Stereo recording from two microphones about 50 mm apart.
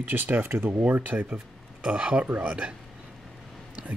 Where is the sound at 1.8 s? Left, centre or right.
Right.